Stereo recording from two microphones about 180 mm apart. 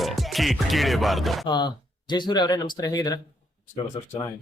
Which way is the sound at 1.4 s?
25° left (ahead or behind).